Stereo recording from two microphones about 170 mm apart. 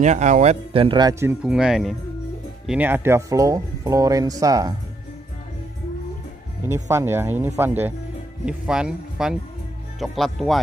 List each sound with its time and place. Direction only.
0.0 s speech: 45° right (ahead or behind); by 1.1 s 30° right (ahead or behind)
1.2 s speech: 5° right (ahead or behind); by 4.7 s 20° right (ahead or behind)
6.7 s speech: 15° right (ahead or behind); by 10.6 s centre (ahead or behind)